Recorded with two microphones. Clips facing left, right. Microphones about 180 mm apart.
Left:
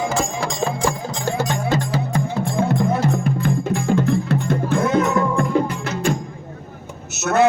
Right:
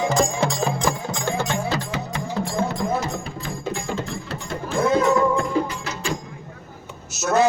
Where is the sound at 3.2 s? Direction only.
60° left (ahead or behind).